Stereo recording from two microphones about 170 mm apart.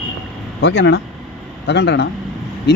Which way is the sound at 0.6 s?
90° left.